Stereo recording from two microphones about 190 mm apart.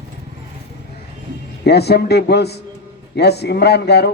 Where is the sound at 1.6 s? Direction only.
60° left (ahead or behind).